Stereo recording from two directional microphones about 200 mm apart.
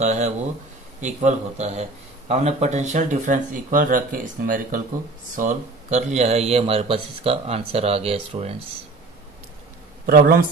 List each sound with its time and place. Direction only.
0.0 s speech: 35° right (ahead or behind)
10.0 s speech: 50° right (ahead or behind)